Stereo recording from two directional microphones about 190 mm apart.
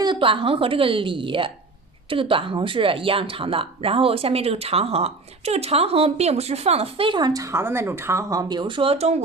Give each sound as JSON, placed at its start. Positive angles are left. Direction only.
{"t": 0.0, "sound": "speech", "side_deg": -25}